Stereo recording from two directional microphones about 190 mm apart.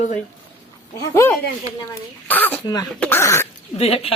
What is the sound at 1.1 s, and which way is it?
Music, 15° left (ahead or behind).